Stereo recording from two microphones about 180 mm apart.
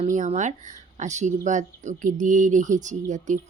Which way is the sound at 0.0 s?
40° right (ahead or behind).